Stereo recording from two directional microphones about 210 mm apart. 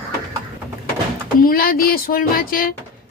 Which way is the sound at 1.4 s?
45° left (ahead or behind).